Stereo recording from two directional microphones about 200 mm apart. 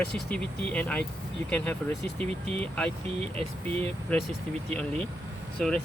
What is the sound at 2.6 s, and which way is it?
Speech, 5° left (ahead or behind).